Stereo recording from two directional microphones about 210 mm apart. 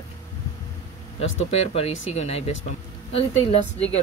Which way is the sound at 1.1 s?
30° left (ahead or behind).